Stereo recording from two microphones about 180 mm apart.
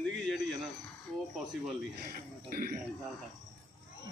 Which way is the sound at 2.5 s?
50° right (ahead or behind).